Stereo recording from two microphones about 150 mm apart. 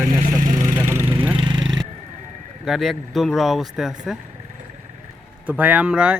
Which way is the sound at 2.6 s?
Centre (ahead or behind).